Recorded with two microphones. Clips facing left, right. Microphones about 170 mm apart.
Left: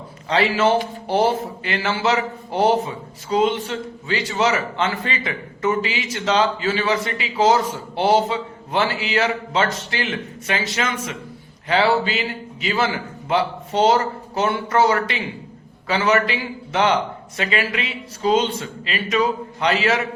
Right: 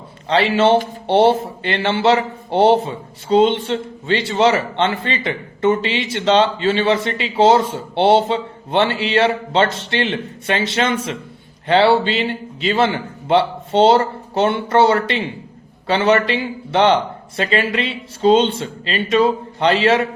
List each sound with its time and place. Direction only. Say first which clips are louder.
0.3 s speech: right 4 dB; 30° right (ahead or behind)